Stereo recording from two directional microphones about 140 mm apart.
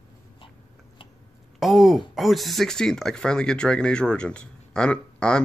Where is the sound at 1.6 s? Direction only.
Centre (ahead or behind).